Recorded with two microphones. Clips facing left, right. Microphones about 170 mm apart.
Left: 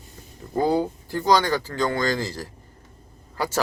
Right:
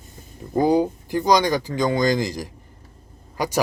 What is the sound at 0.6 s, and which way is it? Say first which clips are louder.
Speech: right 4 dB; 15° right (ahead or behind).